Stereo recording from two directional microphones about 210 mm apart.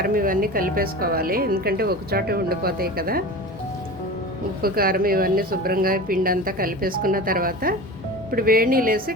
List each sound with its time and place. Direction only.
0.0 s a woman's voice: 45° right (ahead or behind)
4.6 s a woman's voice: 45° right (ahead or behind)